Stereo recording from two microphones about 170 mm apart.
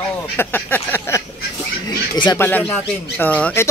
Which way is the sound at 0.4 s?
10° left (ahead or behind).